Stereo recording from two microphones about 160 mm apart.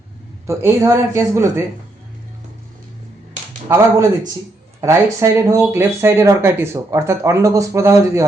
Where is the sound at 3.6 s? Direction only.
15° right (ahead or behind).